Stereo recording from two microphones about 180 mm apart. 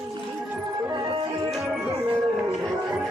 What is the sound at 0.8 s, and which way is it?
Music, 25° right (ahead or behind).